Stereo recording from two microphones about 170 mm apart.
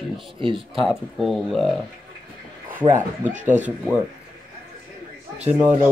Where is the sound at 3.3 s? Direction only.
45° right (ahead or behind).